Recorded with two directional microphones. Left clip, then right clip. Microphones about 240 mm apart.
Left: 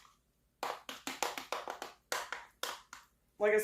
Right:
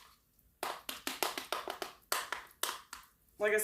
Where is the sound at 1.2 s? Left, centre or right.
Centre.